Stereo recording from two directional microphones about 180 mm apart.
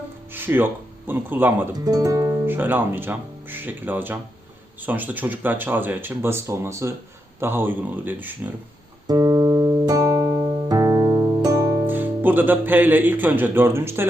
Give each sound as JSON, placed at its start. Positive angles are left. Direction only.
{"t": 0.3, "sound": "speech", "side_deg": -10}
{"t": 9.0, "sound": "music", "side_deg": -20}
{"t": 11.9, "sound": "speech", "side_deg": -10}